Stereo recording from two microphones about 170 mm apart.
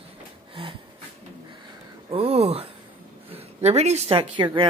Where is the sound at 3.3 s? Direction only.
40° right (ahead or behind).